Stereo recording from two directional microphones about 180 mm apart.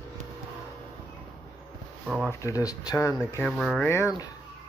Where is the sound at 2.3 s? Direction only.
15° left (ahead or behind).